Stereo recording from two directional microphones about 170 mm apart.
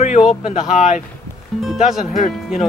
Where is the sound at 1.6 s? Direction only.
5° right (ahead or behind).